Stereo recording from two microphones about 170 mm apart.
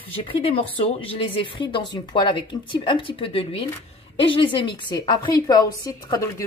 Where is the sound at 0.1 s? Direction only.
35° left (ahead or behind).